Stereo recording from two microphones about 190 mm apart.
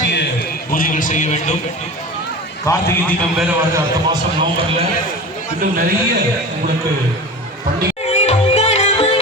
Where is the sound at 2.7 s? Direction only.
15° left (ahead or behind).